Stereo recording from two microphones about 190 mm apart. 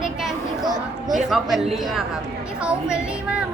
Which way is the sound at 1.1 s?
Centre (ahead or behind).